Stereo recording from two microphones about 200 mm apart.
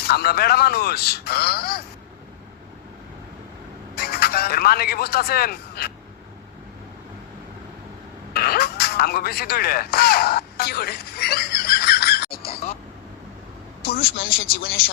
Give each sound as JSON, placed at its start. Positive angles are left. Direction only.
{"t": 0.0, "sound": "speech", "side_deg": 50}
{"t": 3.9, "sound": "speech", "side_deg": 50}
{"t": 8.3, "sound": "a sound", "side_deg": 50}
{"t": 13.9, "sound": "speech", "side_deg": 50}